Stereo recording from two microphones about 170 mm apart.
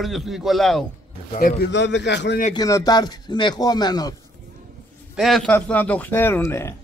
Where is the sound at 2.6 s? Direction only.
20° left (ahead or behind).